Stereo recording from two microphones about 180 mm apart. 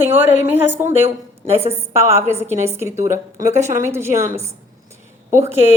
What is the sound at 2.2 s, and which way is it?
A woman's voice, 15° right (ahead or behind).